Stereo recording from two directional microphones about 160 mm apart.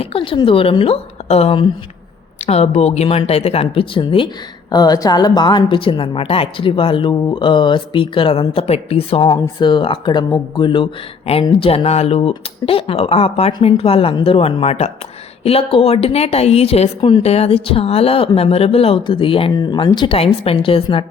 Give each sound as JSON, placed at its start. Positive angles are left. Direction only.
{"t": 0.0, "sound": "a woman's voice", "side_deg": 35}